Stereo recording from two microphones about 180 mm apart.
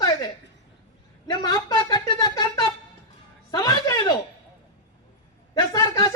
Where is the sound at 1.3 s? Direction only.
25° left (ahead or behind).